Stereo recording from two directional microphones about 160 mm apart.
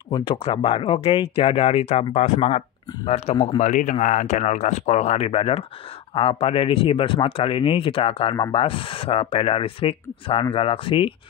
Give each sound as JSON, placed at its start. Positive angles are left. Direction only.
{"t": 0.1, "sound": "speech", "side_deg": 30}